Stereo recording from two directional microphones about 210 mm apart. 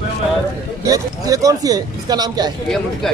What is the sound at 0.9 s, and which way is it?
Speech, 15° right (ahead or behind).